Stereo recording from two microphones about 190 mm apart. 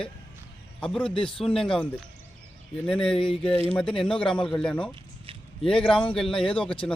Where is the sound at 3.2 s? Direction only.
30° left (ahead or behind).